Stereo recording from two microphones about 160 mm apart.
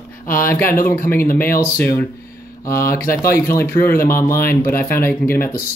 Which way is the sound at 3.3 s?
15° left (ahead or behind).